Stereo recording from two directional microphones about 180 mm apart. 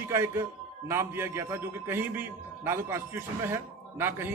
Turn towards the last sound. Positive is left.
turn(degrees=-15)  # may be behind; listen again after turning